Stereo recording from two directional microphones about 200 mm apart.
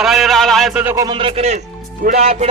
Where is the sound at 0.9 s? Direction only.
20° right (ahead or behind).